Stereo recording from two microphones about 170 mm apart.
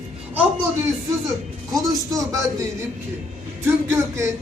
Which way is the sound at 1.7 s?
20° right (ahead or behind).